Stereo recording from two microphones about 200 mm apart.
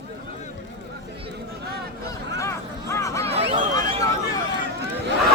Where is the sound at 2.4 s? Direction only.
15° left (ahead or behind).